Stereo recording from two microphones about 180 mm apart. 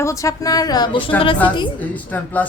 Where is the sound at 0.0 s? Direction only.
15° left (ahead or behind).